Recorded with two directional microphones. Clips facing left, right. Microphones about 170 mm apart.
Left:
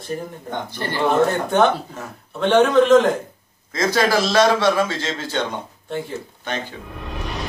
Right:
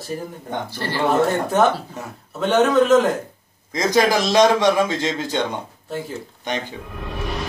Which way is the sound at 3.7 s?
15° right (ahead or behind).